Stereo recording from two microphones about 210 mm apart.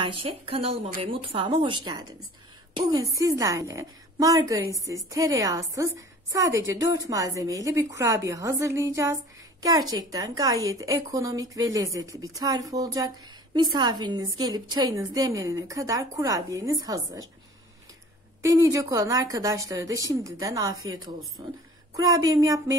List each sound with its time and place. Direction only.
0.0 s a woman's voice: 25° right (ahead or behind)
18.4 s a woman's voice: 15° right (ahead or behind)